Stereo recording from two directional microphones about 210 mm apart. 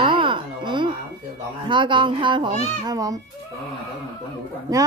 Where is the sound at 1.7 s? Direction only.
20° right (ahead or behind).